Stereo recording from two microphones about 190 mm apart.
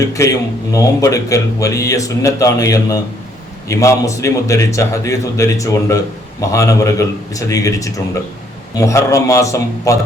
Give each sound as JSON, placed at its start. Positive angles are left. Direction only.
{"t": 0.0, "sound": "speech", "side_deg": 15}